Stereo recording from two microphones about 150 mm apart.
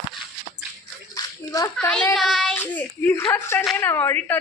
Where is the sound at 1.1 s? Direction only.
25° left (ahead or behind).